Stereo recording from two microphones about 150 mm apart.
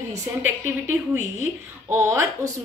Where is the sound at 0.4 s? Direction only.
15° right (ahead or behind).